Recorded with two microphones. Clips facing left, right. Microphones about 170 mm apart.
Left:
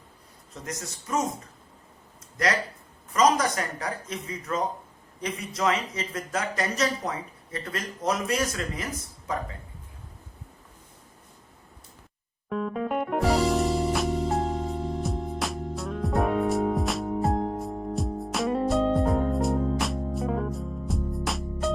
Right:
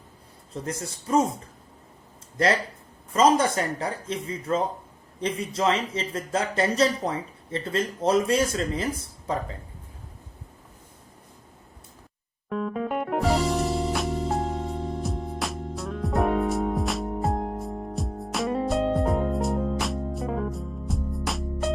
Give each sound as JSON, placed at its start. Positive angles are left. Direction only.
{"t": 0.5, "sound": "a man's voice", "side_deg": -30}
{"t": 2.4, "sound": "speech", "side_deg": -30}
{"t": 12.5, "sound": "music", "side_deg": 0}